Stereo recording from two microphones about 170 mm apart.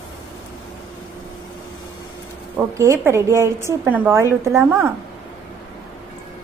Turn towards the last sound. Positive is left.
turn(degrees=-15)  # may be behind; listen again after turning